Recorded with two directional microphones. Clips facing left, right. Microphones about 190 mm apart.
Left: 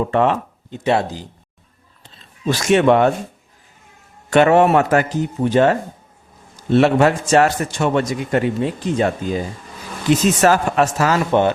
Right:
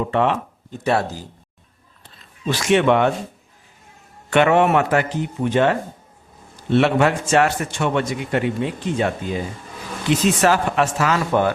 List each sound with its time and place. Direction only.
0.1 s speech: 45° left (ahead or behind)
0.9 s speech: 20° left (ahead or behind)
2.5 s a man's voice: 40° left (ahead or behind)
4.3 s a man's voice: 40° left (ahead or behind)
10.1 s a man's voice: 45° left (ahead or behind)
11.2 s speech: 20° left (ahead or behind)